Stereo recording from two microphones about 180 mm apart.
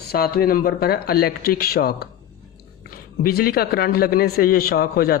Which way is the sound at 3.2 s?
55° left (ahead or behind).